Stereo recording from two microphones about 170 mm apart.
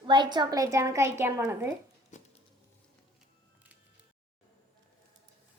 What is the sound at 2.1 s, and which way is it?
Patter, 45° left (ahead or behind).